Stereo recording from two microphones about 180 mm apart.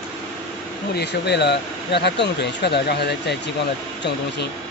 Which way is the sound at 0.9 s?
70° left (ahead or behind).